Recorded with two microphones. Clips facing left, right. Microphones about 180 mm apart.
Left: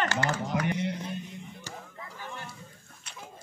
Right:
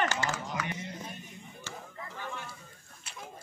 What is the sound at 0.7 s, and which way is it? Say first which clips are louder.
Music: left 9 dB; 75° left (ahead or behind).